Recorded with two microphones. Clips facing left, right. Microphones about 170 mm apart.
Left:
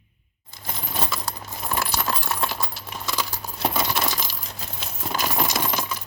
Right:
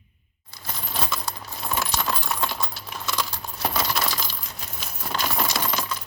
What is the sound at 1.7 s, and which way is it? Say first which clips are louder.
Coin: left 1 dB; 5° left (ahead or behind).